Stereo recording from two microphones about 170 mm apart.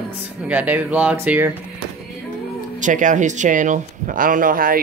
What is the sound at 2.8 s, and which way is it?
Speech, 50° right (ahead or behind).